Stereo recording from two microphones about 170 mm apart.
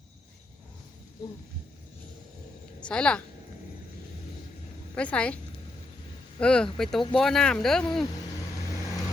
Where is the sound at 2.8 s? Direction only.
5° left (ahead or behind).